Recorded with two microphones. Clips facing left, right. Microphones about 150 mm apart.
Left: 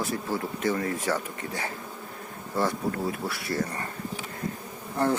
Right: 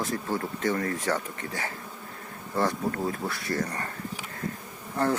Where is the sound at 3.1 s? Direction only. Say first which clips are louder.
Even; 10° left (ahead or behind).